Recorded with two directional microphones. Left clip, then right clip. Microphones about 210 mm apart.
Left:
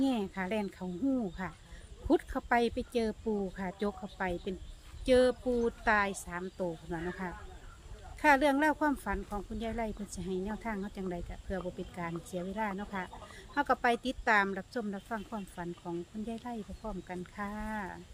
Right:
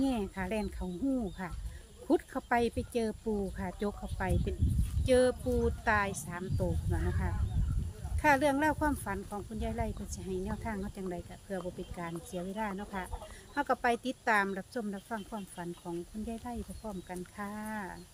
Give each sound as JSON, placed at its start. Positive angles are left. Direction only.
{"t": 0.0, "sound": "speech", "side_deg": 5}